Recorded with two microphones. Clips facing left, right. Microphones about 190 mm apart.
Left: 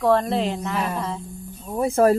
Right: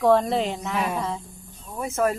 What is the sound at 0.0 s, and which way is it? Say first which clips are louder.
Speech: even; centre (ahead or behind).